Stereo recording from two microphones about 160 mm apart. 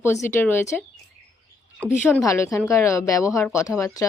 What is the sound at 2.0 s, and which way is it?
A woman's voice, 15° left (ahead or behind).